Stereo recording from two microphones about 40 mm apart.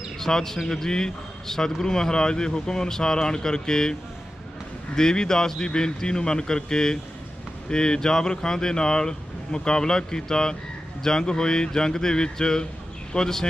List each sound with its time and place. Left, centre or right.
0.2 s speech: centre
4.9 s speech: centre